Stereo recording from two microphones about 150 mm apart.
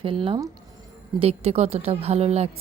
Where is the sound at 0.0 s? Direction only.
35° right (ahead or behind).